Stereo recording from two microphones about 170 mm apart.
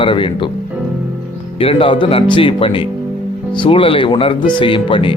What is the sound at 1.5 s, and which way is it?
Speech, 35° left (ahead or behind).